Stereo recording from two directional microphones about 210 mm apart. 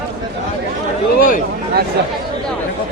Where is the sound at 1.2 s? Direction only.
40° left (ahead or behind).